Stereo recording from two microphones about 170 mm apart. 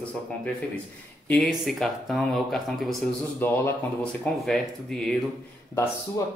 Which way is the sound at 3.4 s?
15° left (ahead or behind).